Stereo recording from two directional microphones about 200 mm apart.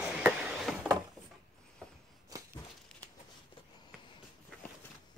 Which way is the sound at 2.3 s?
15° right (ahead or behind).